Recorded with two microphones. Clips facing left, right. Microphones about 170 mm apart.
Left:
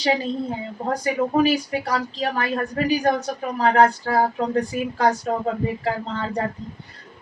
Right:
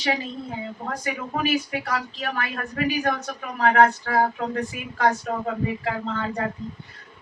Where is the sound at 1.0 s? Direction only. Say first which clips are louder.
Left 8 dB; 35° left (ahead or behind).